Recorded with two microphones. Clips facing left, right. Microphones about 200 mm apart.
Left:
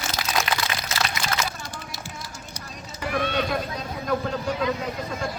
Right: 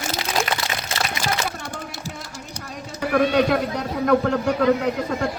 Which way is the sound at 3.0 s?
65° right (ahead or behind).